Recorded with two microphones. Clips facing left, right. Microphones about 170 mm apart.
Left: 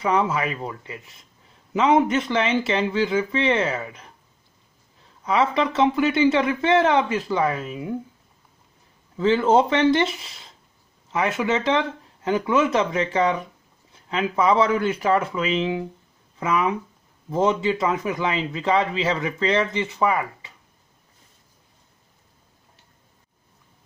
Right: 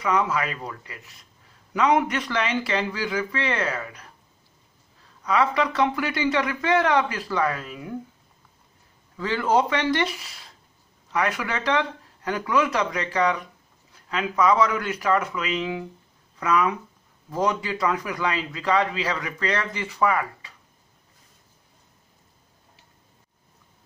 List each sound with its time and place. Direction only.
0.0 s a man's voice: 30° left (ahead or behind)
5.2 s a man's voice: 25° left (ahead or behind)
9.1 s a man's voice: 25° left (ahead or behind)